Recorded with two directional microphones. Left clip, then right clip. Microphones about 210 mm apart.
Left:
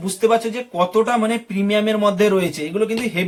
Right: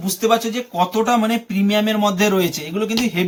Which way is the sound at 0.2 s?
15° left (ahead or behind).